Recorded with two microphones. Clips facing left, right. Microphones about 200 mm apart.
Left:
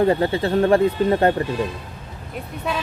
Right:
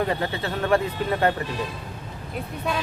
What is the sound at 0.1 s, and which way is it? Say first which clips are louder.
Speech: left 8 dB; 30° left (ahead or behind).